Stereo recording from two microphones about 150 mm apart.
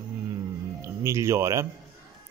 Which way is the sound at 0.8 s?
20° right (ahead or behind).